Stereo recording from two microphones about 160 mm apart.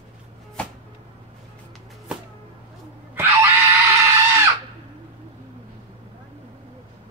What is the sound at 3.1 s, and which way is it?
Screaming, 15° right (ahead or behind).